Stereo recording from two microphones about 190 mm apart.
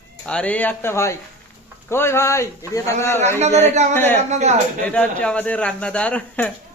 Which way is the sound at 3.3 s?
35° right (ahead or behind).